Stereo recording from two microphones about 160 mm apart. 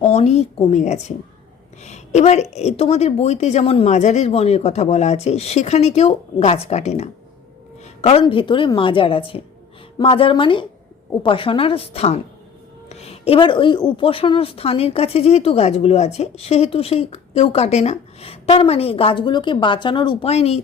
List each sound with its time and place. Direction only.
0.0 s a woman's voice: 40° left (ahead or behind)
8.2 s a woman's voice: 30° left (ahead or behind)